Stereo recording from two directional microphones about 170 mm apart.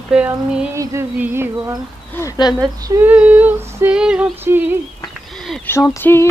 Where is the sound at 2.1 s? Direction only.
20° left (ahead or behind).